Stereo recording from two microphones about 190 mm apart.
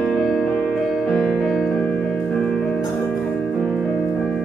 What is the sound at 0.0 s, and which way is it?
Music, centre (ahead or behind).